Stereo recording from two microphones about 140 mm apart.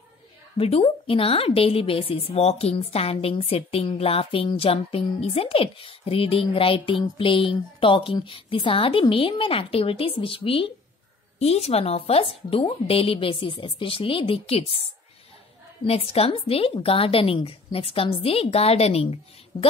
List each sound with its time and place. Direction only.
0.6 s a woman's voice: 45° left (ahead or behind)
15.9 s a woman's voice: 45° left (ahead or behind)
19.5 s a woman's voice: 35° left (ahead or behind)